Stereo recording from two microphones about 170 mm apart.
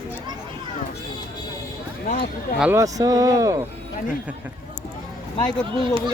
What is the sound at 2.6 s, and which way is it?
Speech, 15° right (ahead or behind).